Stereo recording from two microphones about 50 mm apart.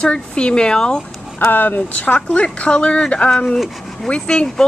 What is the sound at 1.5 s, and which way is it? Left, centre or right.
Speech, left.